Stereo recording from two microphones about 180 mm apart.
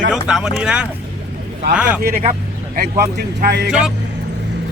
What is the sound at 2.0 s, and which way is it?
Speech, 55° right (ahead or behind).